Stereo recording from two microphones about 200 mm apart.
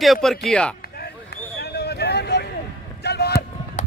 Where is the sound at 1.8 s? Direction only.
55° left (ahead or behind).